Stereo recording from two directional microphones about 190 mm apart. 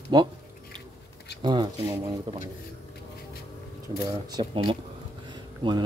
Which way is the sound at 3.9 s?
20° right (ahead or behind).